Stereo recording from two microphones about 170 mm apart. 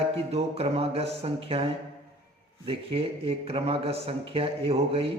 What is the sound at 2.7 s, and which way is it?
A man's voice, 35° right (ahead or behind).